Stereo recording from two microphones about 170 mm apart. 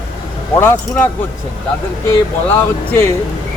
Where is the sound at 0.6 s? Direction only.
10° left (ahead or behind).